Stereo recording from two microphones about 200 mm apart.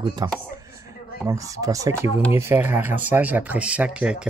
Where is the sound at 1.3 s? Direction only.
15° right (ahead or behind).